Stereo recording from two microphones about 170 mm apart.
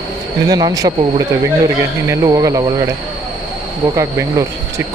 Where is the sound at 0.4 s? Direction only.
20° right (ahead or behind).